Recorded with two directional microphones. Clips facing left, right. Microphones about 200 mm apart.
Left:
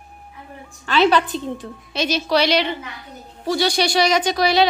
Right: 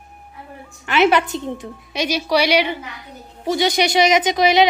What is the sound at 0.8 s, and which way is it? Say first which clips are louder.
A woman's voice: right 1 dB; 20° right (ahead or behind).